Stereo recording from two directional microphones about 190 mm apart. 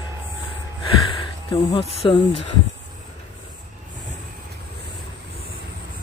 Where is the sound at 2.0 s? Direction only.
25° left (ahead or behind).